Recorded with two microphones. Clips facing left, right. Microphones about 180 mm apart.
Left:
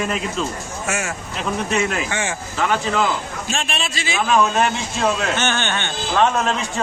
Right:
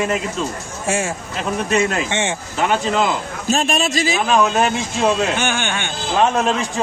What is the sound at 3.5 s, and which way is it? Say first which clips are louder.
Speech: right 9 dB; 40° right (ahead or behind).